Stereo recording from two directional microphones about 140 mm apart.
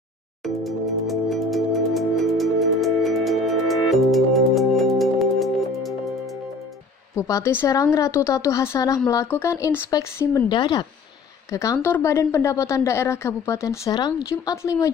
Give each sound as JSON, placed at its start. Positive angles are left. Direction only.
{"t": 0.4, "sound": "music", "side_deg": 0}
{"t": 7.2, "sound": "a woman's voice", "side_deg": 20}
{"t": 10.5, "sound": "speech", "side_deg": 35}
{"t": 11.5, "sound": "a woman's voice", "side_deg": 20}
{"t": 13.9, "sound": "speech", "side_deg": 30}
{"t": 14.3, "sound": "a woman's voice", "side_deg": 20}